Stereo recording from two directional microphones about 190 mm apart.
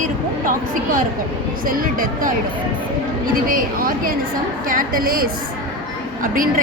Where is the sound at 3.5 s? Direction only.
50° right (ahead or behind).